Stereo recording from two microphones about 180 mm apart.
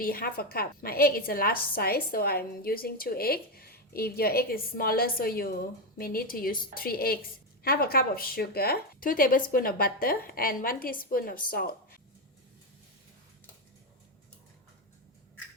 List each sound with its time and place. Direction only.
0.0 s a woman's voice: 55° left (ahead or behind)